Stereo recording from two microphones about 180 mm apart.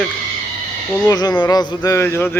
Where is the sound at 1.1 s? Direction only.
20° left (ahead or behind).